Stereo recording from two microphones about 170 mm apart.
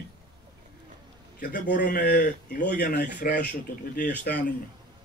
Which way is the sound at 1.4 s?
50° left (ahead or behind).